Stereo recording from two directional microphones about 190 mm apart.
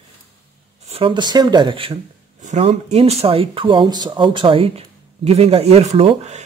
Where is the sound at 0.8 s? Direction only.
30° right (ahead or behind).